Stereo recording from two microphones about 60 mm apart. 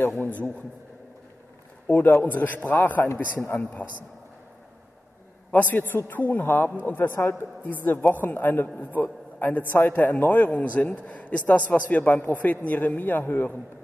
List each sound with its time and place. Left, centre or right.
0.0 s a man's voice: left
1.9 s a man's voice: left
3.0 s a man's voice: left
5.5 s a man's voice: left